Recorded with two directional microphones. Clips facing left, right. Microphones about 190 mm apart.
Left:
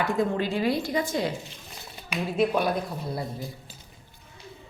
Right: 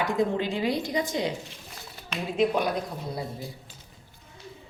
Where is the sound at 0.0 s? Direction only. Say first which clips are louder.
Even; 20° right (ahead or behind).